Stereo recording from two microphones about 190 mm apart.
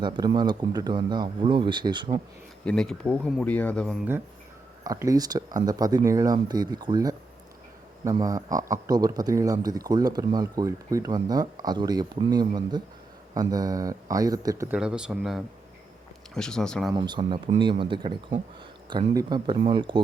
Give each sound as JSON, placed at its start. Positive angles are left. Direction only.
{"t": 0.0, "sound": "speech", "side_deg": -25}
{"t": 2.6, "sound": "speech", "side_deg": 5}
{"t": 4.8, "sound": "speech", "side_deg": -20}
{"t": 14.8, "sound": "speech", "side_deg": -5}
{"t": 16.9, "sound": "speech", "side_deg": -25}